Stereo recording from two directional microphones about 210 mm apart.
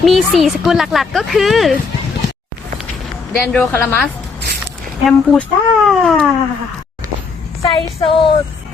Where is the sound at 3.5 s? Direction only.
10° left (ahead or behind).